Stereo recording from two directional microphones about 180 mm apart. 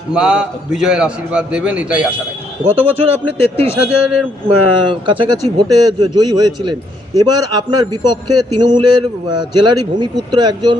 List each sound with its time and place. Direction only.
0.1 s a man's voice: 5° right (ahead or behind)
4.4 s a man's voice: 25° right (ahead or behind)